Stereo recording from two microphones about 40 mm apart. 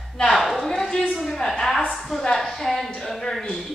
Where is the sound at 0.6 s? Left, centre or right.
Centre.